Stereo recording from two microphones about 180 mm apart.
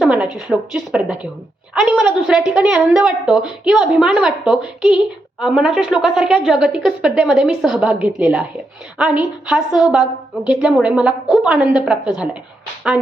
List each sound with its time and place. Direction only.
0.0 s a woman's voice: 5° right (ahead or behind)